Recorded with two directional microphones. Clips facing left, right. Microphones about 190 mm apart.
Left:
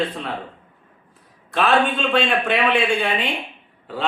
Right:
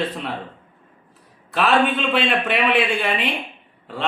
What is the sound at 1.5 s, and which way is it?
A man's voice, 5° right (ahead or behind).